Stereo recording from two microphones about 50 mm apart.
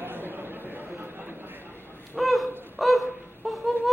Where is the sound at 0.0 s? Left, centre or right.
Right.